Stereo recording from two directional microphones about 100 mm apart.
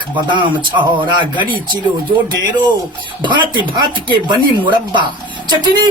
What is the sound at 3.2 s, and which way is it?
Speech, 50° right (ahead or behind).